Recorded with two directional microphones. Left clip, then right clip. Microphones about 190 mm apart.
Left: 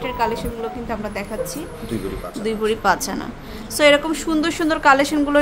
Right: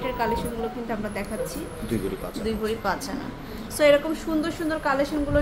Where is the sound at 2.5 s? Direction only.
35° left (ahead or behind).